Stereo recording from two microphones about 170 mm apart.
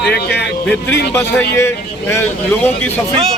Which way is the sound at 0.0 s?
75° left (ahead or behind).